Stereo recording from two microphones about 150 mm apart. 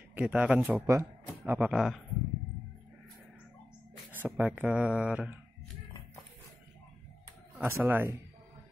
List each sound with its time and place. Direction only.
0.1 s speech: 10° right (ahead or behind)
4.1 s speech: 10° right (ahead or behind)
7.6 s speech: 15° right (ahead or behind)